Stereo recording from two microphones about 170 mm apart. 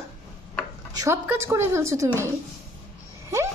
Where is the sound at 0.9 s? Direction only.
15° right (ahead or behind).